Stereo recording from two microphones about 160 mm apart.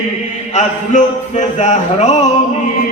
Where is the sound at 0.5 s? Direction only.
50° left (ahead or behind).